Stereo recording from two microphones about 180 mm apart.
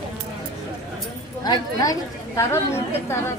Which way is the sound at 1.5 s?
20° left (ahead or behind).